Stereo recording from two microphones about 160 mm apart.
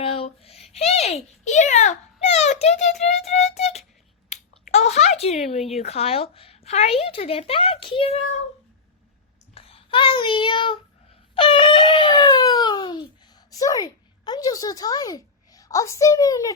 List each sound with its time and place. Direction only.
0.0 s a child's voice: 35° left (ahead or behind)
3.0 s music: 45° left (ahead or behind)
4.3 s finger snapping: 45° left (ahead or behind)
5.8 s speech: 40° left (ahead or behind)
9.6 s child singing: 35° left (ahead or behind)
11.3 s wail: 35° left (ahead or behind)
13.5 s a woman's voice: 20° left (ahead or behind)